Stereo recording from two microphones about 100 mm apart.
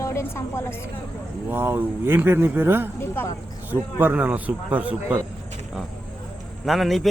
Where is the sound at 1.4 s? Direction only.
20° right (ahead or behind).